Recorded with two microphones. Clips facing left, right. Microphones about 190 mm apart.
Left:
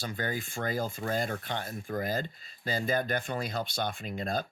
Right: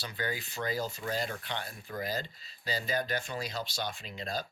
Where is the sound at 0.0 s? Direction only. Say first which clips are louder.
Left 3 dB; 50° left (ahead or behind).